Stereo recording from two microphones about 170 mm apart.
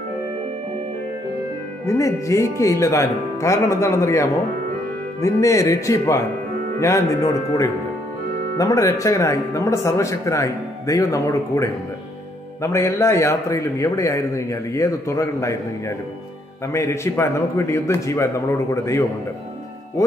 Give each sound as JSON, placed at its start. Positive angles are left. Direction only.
{"t": 1.9, "sound": "speech", "side_deg": 20}
{"t": 8.5, "sound": "speech", "side_deg": 20}
{"t": 16.6, "sound": "speech", "side_deg": 15}